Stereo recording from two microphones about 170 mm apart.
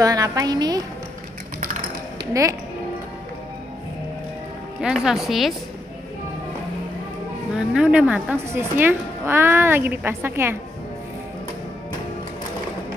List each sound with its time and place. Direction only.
0.0 s a woman's voice: 20° right (ahead or behind)
4.8 s speech: 5° right (ahead or behind)
7.5 s a woman's voice: 5° right (ahead or behind)